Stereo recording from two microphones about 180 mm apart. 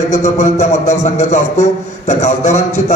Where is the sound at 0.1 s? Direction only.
40° left (ahead or behind).